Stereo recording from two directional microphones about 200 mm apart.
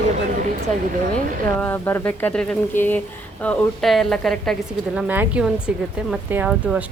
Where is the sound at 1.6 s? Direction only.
10° left (ahead or behind).